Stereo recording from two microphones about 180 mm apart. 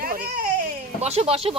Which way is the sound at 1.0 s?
35° right (ahead or behind).